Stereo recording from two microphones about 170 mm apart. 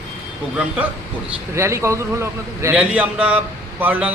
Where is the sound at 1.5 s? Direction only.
15° right (ahead or behind).